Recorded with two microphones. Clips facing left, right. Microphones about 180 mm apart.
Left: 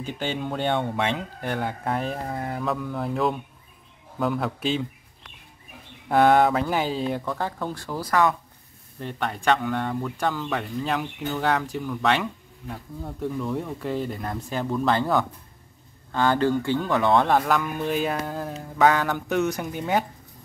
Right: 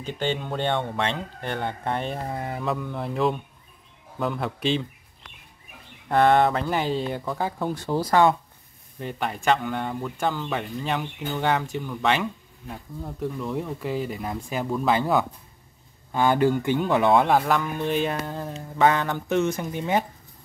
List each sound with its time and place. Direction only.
0.0 s speech: 5° left (ahead or behind)
6.0 s speech: centre (ahead or behind)
7.3 s speech: 15° right (ahead or behind); by 8.4 s 30° right (ahead or behind)
9.0 s speech: 5° right (ahead or behind)
17.3 s speech: centre (ahead or behind)